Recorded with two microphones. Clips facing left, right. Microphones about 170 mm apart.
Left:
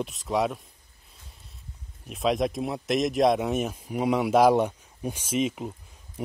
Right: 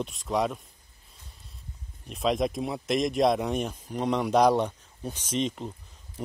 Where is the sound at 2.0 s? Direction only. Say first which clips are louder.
Left 1 dB; centre (ahead or behind).